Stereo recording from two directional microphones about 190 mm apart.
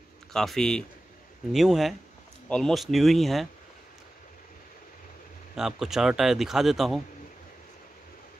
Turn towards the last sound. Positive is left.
turn(degrees=0)  # may be behind; listen again after turning